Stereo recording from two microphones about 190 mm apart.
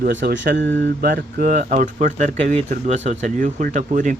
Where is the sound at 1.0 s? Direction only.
50° right (ahead or behind).